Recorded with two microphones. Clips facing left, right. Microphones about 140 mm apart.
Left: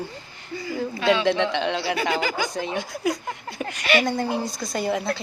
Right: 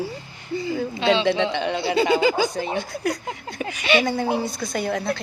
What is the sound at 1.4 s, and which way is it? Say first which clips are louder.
Speech: right 1 dB; 5° right (ahead or behind).